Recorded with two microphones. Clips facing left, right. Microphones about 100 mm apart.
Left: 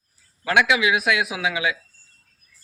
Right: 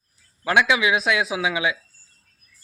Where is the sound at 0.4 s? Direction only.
20° right (ahead or behind).